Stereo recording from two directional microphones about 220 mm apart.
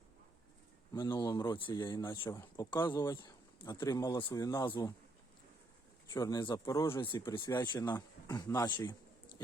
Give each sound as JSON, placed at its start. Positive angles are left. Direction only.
{"t": 0.9, "sound": "speech", "side_deg": 20}
{"t": 6.1, "sound": "speech", "side_deg": 15}